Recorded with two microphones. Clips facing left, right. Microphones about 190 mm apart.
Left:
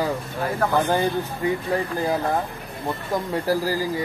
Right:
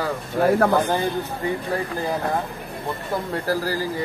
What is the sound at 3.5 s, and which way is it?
Speech, 15° left (ahead or behind).